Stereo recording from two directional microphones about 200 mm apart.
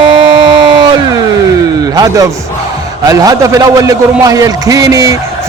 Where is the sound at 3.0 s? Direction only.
15° right (ahead or behind).